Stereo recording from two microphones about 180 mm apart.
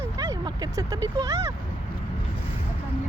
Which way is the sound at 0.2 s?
20° right (ahead or behind).